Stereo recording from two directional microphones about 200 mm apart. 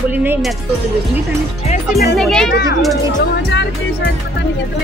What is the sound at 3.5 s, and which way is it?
Speech, 60° left (ahead or behind).